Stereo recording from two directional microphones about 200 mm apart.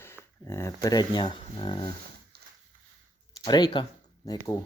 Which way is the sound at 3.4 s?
20° left (ahead or behind).